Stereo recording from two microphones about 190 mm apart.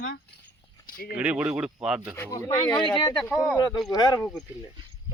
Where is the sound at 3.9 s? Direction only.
20° left (ahead or behind).